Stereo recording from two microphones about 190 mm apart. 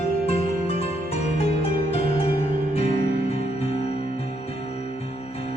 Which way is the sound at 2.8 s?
30° left (ahead or behind).